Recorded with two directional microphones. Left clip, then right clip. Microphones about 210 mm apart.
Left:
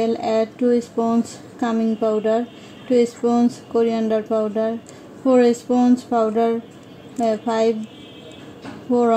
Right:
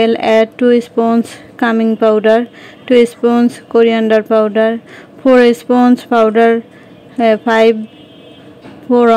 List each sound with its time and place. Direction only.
0.0 s speech: 10° right (ahead or behind)
2.0 s speech: 25° right (ahead or behind)
2.9 s speech: 10° right (ahead or behind)
8.9 s a woman's voice: 35° right (ahead or behind)